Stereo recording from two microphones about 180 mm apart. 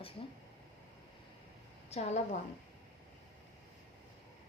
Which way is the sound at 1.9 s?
35° left (ahead or behind).